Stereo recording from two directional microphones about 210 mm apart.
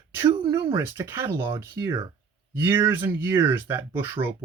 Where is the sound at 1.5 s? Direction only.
25° right (ahead or behind).